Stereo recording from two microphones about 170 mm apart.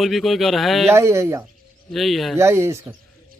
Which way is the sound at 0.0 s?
Centre (ahead or behind).